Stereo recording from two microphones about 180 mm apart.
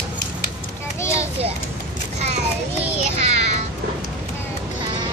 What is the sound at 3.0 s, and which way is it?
Child singing, 35° right (ahead or behind).